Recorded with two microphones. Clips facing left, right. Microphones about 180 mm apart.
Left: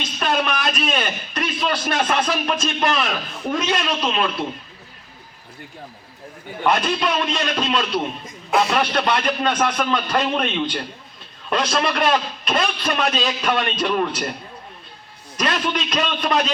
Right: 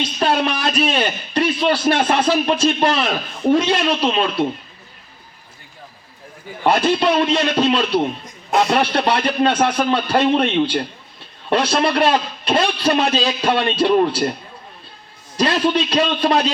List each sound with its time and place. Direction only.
0.2 s a man's voice: 30° right (ahead or behind)
6.7 s a man's voice: 30° right (ahead or behind)
15.4 s a man's voice: 30° right (ahead or behind)